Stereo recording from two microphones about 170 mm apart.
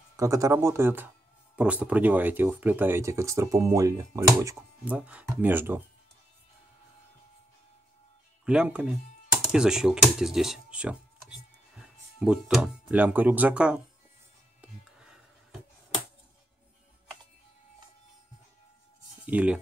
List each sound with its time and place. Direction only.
0.2 s speech: 20° right (ahead or behind)
8.5 s speech: 5° right (ahead or behind)
14.6 s music: 5° right (ahead or behind)
19.2 s speech: 5° right (ahead or behind)